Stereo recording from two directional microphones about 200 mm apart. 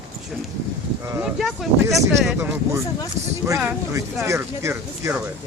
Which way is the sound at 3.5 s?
15° right (ahead or behind).